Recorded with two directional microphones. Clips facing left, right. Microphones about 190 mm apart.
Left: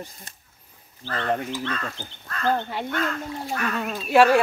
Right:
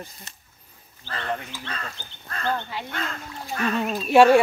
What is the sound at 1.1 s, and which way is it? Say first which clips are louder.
Speech: left 4 dB; 35° left (ahead or behind).